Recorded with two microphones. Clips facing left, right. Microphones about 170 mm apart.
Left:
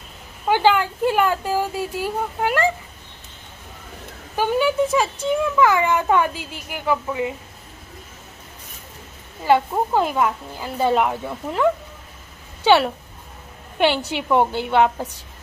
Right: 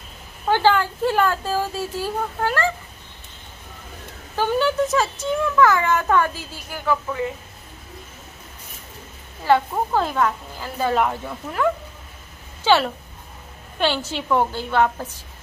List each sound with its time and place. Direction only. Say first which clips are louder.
0.5 s a child's voice: left 1 dB; 15° left (ahead or behind)
4.4 s a child's voice: left 1 dB; 15° left (ahead or behind)
9.4 s a child's voice: left 1 dB; 15° left (ahead or behind)